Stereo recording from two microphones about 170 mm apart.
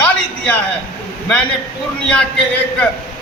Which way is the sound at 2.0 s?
5° left (ahead or behind).